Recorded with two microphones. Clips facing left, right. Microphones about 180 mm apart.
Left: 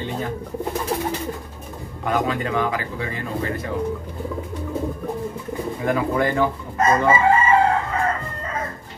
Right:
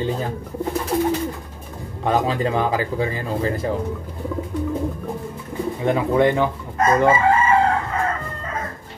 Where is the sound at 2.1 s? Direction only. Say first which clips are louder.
Right 3 dB; 30° right (ahead or behind).